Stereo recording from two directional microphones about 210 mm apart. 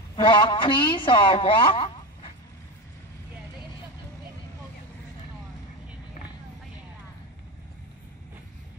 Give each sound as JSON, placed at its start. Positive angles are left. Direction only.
{"t": 0.1, "sound": "a woman's voice", "side_deg": 25}